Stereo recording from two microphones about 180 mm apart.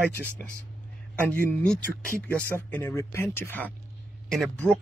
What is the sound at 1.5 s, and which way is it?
Speech, 5° left (ahead or behind).